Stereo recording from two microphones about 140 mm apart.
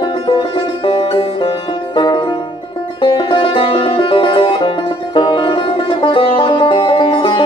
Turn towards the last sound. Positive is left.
turn(degrees=35)  # may be behind; listen again after turning